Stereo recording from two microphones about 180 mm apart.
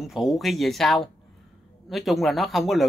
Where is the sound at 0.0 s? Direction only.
Centre (ahead or behind).